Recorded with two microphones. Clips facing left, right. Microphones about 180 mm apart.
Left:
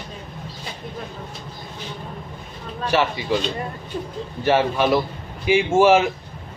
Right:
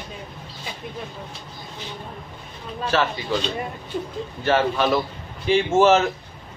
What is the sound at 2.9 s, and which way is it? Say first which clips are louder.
Speech: left 2 dB; 15° left (ahead or behind).